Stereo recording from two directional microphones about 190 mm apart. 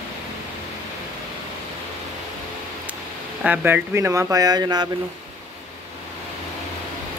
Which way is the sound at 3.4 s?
10° right (ahead or behind).